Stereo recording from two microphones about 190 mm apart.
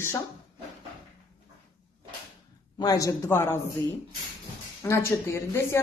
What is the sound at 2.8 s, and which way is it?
Speech, 20° left (ahead or behind).